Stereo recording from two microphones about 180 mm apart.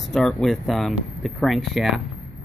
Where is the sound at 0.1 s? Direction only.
Centre (ahead or behind).